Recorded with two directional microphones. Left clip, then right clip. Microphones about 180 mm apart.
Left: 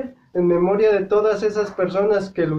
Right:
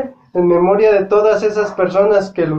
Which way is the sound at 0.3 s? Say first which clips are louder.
Right 6 dB; 25° left (ahead or behind).